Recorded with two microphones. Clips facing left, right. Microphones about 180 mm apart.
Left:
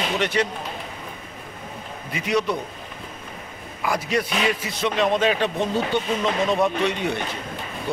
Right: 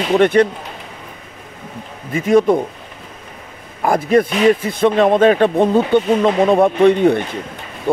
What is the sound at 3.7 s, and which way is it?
A man's voice, 50° right (ahead or behind).